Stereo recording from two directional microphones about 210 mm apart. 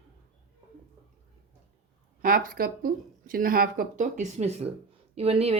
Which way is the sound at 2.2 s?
40° right (ahead or behind).